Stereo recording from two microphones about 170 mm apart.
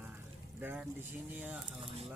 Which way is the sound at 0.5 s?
10° right (ahead or behind).